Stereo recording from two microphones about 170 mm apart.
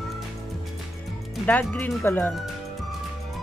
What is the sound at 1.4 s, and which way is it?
Speech, 10° left (ahead or behind).